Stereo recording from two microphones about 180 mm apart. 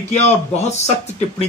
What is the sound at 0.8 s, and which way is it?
Speech, 35° left (ahead or behind).